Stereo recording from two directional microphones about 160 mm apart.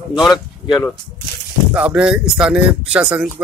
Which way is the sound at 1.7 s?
10° right (ahead or behind).